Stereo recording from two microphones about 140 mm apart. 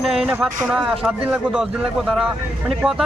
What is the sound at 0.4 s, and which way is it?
Speech, 5° right (ahead or behind).